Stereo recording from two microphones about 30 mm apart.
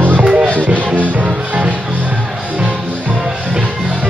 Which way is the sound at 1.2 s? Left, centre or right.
Right.